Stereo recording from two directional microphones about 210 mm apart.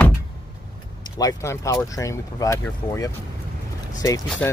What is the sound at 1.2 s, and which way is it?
Speech, 15° left (ahead or behind).